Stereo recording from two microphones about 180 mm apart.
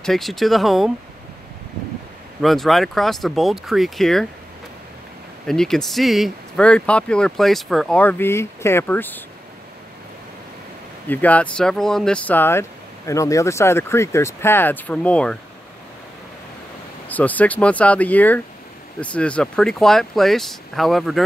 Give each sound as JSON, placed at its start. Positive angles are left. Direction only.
{"t": 0.0, "sound": "speech", "side_deg": 0}
{"t": 2.4, "sound": "speech", "side_deg": 0}
{"t": 5.5, "sound": "speech", "side_deg": 0}
{"t": 11.1, "sound": "speech", "side_deg": 10}
{"t": 17.1, "sound": "speech", "side_deg": 10}